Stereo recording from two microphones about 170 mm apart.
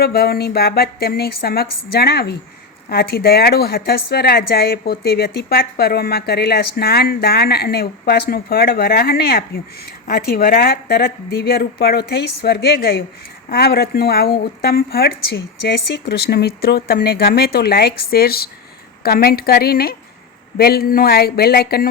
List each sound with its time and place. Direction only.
0.0 s a woman's voice: 65° left (ahead or behind)